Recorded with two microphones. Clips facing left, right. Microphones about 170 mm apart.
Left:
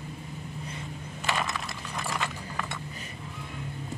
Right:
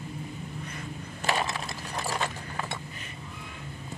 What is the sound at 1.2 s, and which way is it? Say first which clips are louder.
Mechanisms: right 2 dB; 30° right (ahead or behind).